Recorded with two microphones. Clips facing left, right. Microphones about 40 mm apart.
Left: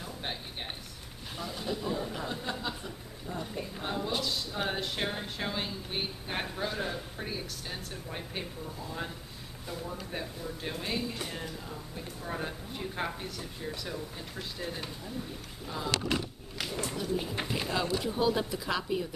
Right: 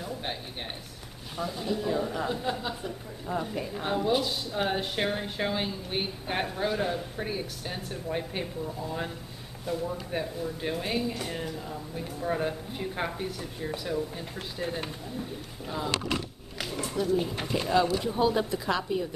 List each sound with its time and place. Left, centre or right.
0.0 s a sound: centre
1.4 s speech: centre
1.9 s speech: right
2.3 s speech: centre
3.3 s a woman's voice: right
3.7 s speech: centre
9.7 s speech: centre
16.1 s a sound: centre
17.4 s speech: centre